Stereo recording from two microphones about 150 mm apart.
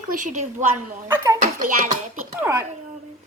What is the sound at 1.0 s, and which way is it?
Speech, 20° right (ahead or behind).